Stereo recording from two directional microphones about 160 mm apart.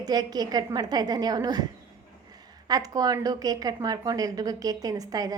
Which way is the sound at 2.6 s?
25° right (ahead or behind).